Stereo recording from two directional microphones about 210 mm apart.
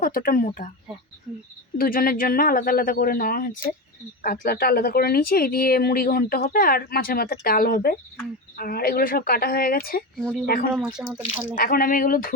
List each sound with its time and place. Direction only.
0.0 s speech: 40° left (ahead or behind)
1.3 s speech: 5° right (ahead or behind)
1.8 s speech: 45° left (ahead or behind)
10.2 s speech: centre (ahead or behind)
10.4 s speech: 45° left (ahead or behind)
10.8 s speech: 5° right (ahead or behind)
11.5 s speech: 45° left (ahead or behind)